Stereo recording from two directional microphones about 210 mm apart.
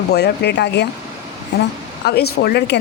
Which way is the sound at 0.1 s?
50° left (ahead or behind).